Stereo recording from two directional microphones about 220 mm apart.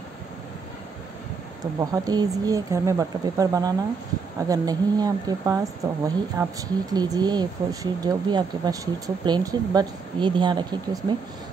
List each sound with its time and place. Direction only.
1.8 s speech: 15° right (ahead or behind)